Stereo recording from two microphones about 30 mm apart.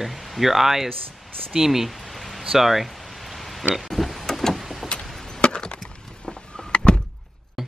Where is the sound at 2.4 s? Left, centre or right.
Centre.